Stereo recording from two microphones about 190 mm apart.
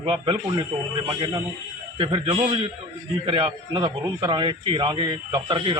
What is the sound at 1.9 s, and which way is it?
Speech, 25° right (ahead or behind).